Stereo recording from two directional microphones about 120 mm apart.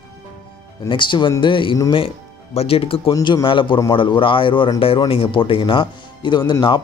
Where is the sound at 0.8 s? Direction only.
40° left (ahead or behind).